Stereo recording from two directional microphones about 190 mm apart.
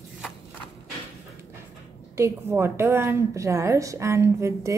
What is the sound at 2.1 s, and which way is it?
A woman's voice, 15° right (ahead or behind).